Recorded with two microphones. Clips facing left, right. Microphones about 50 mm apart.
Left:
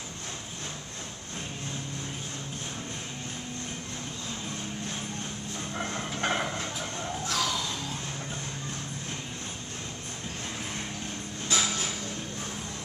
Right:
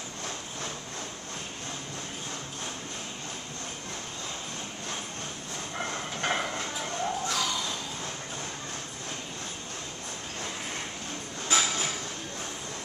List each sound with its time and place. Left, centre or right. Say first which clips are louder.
5.8 s train: left 1 dB; centre
7.2 s music: even; centre
11.5 s a sound: right 2 dB; right